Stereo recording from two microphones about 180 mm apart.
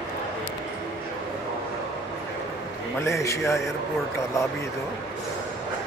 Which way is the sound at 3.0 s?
15° left (ahead or behind).